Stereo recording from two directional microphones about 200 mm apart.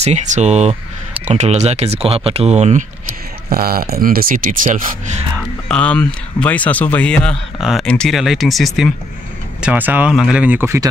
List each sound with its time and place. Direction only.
0.0 s speech: 35° right (ahead or behind)
3.4 s speech: 50° right (ahead or behind)
5.7 s speech: 5° left (ahead or behind); by 10.9 s 10° right (ahead or behind)